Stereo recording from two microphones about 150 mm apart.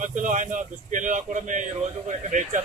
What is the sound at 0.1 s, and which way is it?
Speech, 55° right (ahead or behind).